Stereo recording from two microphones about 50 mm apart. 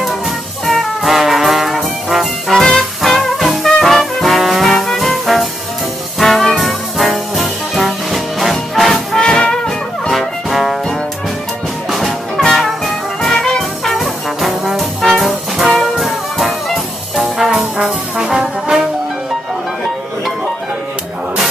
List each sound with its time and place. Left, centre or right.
0.7 s trombone: centre
2.6 s music: centre
6.1 s brass instrument: centre
9.2 s music: centre
10.1 s music: centre
11.9 s music: centre
12.4 s brass instrument: centre
17.8 s brass instrument: centre